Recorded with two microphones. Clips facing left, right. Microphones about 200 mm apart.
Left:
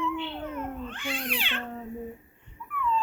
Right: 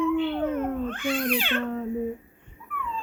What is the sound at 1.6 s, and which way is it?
Cat, 65° right (ahead or behind).